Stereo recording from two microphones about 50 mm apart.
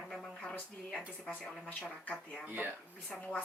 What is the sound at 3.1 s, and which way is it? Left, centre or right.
Speech, left.